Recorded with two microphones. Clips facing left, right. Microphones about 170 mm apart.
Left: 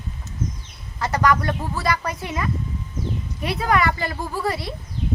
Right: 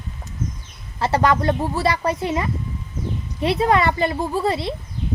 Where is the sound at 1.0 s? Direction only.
30° right (ahead or behind).